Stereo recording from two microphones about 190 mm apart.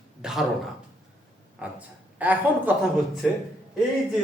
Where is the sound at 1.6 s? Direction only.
10° right (ahead or behind).